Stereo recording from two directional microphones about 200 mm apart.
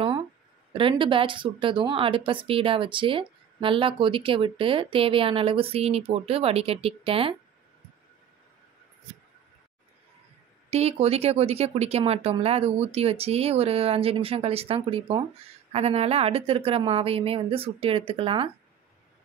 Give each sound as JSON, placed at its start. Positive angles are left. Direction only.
{"t": 0.7, "sound": "a woman's voice", "side_deg": -25}
{"t": 10.7, "sound": "a woman's voice", "side_deg": -30}